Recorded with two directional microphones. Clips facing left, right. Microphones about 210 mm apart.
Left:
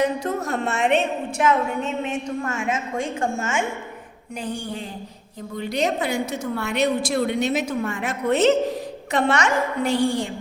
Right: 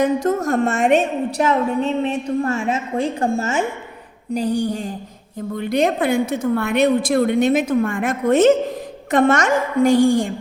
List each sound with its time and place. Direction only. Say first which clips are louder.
0.0 s a woman's voice: right 5 dB; 50° right (ahead or behind)